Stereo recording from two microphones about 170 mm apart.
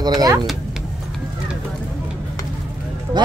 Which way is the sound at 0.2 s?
20° right (ahead or behind).